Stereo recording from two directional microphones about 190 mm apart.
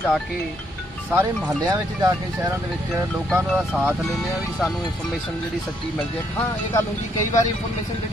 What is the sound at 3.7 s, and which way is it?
Speech, 5° right (ahead or behind).